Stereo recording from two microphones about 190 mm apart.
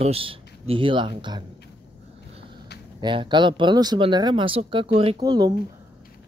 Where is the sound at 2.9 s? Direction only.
25° right (ahead or behind).